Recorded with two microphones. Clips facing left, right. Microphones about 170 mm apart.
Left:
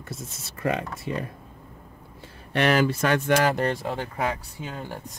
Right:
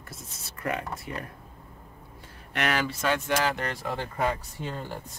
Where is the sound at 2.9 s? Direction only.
55° left (ahead or behind).